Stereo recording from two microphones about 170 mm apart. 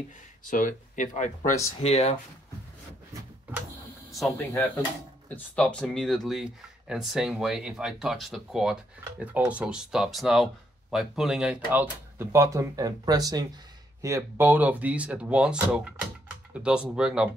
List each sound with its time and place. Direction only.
0.5 s speech: 50° left (ahead or behind)
4.1 s speech: centre (ahead or behind)